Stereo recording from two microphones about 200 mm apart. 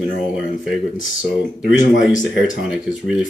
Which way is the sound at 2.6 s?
5° right (ahead or behind).